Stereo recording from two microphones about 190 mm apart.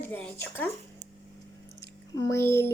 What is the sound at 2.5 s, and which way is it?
Speech, 15° left (ahead or behind).